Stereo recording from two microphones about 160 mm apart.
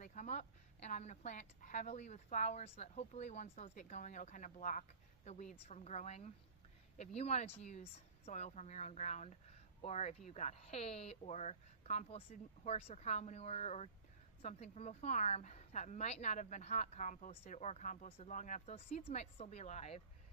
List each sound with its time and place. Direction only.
0.0 s a woman's voice: 55° left (ahead or behind)